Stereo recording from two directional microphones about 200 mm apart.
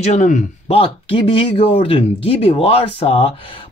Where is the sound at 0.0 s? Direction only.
35° left (ahead or behind).